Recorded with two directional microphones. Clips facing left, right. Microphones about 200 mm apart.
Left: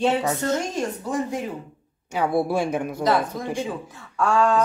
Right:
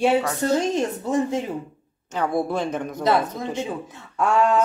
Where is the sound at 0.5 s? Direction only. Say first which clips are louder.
Right 4 dB; 25° right (ahead or behind).